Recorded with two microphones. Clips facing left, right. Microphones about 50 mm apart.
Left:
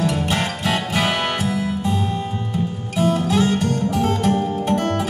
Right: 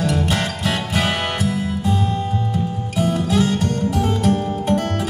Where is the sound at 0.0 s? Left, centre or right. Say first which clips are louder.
Even; left.